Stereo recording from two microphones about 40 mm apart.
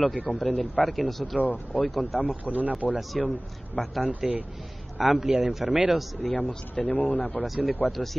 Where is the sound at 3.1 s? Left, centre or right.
Centre.